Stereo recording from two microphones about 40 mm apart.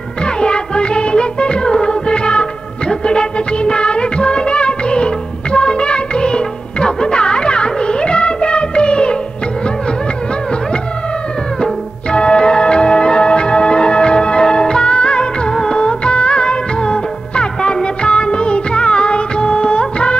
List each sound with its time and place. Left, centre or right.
0.4 s music: left
2.9 s music of bollywood: left
11.6 s music: left